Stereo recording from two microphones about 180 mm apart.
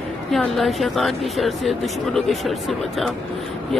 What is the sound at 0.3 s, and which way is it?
A woman's voice, centre (ahead or behind).